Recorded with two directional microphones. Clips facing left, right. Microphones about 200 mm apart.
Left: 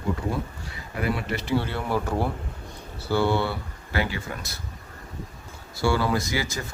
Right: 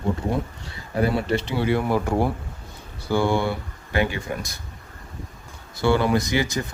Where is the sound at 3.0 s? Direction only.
15° right (ahead or behind).